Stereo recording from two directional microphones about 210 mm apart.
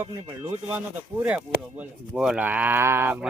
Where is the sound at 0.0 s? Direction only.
15° right (ahead or behind).